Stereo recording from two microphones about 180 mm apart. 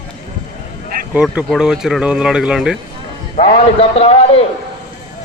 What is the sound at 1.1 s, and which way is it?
Speech, 5° right (ahead or behind).